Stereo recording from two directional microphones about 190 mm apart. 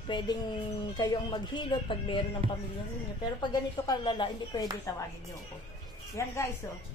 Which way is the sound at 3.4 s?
20° left (ahead or behind).